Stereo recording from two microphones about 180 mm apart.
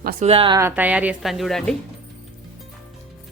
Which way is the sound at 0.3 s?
30° right (ahead or behind).